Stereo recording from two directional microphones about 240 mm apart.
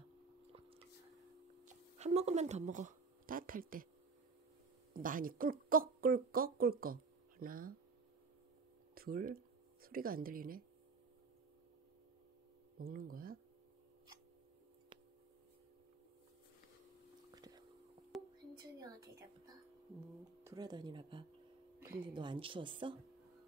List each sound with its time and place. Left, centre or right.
0.5 s squish: right
1.6 s speech: right
4.9 s a woman's voice: right
8.9 s speech: right
12.7 s a woman's voice: right
17.3 s whispering: centre
18.1 s whispering: centre
18.6 s a sound: centre
20.4 s speech: centre